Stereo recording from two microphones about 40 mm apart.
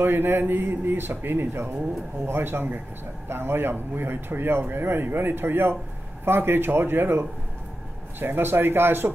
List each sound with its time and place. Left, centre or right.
0.0 s speech: right
2.2 s speech: right
3.3 s speech: right